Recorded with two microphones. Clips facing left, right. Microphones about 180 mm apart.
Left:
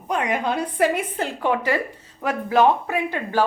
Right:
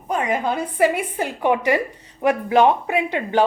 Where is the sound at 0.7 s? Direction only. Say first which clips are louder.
Right 3 dB; 10° right (ahead or behind).